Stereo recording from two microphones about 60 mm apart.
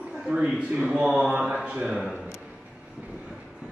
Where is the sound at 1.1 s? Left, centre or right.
Centre.